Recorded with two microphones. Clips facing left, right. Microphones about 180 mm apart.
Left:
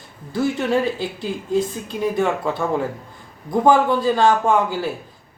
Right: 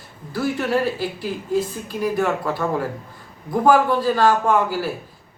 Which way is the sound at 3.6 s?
20° left (ahead or behind).